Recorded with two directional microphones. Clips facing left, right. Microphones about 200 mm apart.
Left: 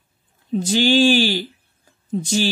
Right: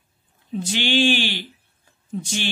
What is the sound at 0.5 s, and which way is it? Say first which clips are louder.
Speech: left 6 dB; 40° left (ahead or behind).